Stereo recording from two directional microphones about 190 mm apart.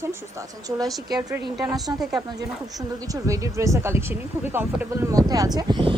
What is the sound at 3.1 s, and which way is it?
Speech, 15° right (ahead or behind).